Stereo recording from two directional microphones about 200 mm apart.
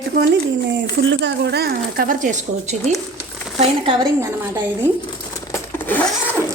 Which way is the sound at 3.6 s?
25° right (ahead or behind).